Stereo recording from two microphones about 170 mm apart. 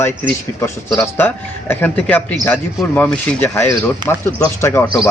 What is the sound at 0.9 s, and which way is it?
Speech, 15° left (ahead or behind).